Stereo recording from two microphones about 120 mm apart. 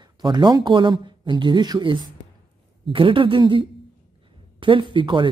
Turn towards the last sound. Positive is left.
turn(degrees=-40)  # may be behind; listen again after turning